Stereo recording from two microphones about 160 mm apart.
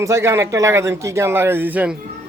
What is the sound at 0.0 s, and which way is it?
A man's voice, 15° right (ahead or behind).